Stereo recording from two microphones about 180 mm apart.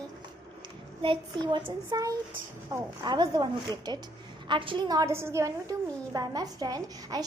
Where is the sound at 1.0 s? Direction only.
25° right (ahead or behind).